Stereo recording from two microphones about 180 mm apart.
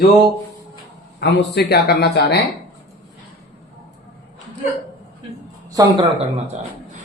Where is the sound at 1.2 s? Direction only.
70° left (ahead or behind).